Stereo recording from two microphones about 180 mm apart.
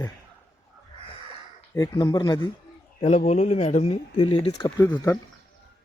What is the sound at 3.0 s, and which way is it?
Speech, 40° left (ahead or behind).